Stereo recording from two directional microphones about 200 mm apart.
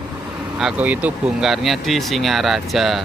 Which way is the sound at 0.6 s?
5° right (ahead or behind).